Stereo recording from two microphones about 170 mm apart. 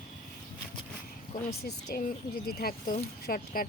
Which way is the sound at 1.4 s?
60° left (ahead or behind).